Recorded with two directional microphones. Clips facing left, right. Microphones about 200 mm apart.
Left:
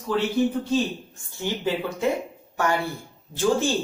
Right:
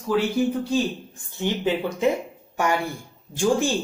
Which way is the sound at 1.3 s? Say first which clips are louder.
Right 3 dB; 20° right (ahead or behind).